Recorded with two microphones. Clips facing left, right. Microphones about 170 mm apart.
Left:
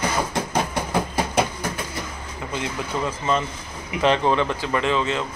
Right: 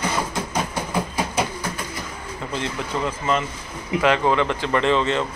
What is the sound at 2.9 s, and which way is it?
Speech, 15° left (ahead or behind).